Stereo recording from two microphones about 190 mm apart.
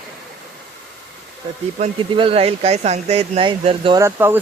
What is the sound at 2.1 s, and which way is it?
Speech, 30° right (ahead or behind).